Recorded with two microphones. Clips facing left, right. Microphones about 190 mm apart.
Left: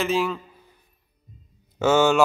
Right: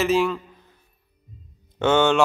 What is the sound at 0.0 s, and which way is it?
Speech, centre (ahead or behind).